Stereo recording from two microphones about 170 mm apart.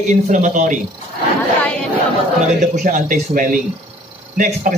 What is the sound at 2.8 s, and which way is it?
A man's voice, 50° right (ahead or behind).